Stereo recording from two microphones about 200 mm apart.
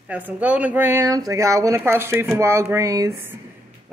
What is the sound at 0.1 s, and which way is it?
Speech, 10° right (ahead or behind).